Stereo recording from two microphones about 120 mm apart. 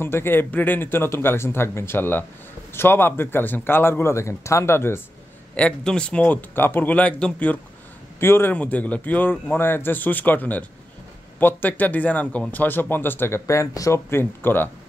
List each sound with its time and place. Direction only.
0.0 s a man's voice: 20° left (ahead or behind)
5.5 s speech: 10° left (ahead or behind)